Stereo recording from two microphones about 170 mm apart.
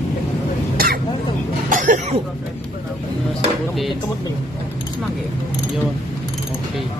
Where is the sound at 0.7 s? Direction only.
60° right (ahead or behind).